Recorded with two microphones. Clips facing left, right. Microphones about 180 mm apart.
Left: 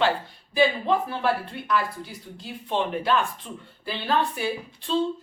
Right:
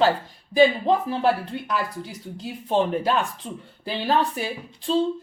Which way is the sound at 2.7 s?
40° right (ahead or behind).